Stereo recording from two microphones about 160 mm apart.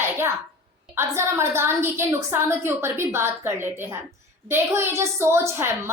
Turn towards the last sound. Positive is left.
turn(degrees=-15)  # may be behind; listen again after turning